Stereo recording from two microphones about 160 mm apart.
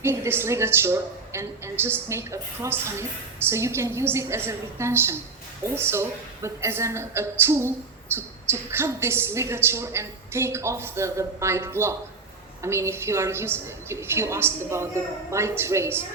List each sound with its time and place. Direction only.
0.0 s a woman's voice: 15° right (ahead or behind)